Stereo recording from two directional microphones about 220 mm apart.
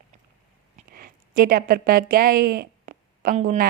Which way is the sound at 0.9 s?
40° right (ahead or behind).